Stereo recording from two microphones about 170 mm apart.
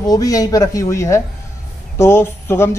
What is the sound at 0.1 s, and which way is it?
A woman's voice, 20° left (ahead or behind).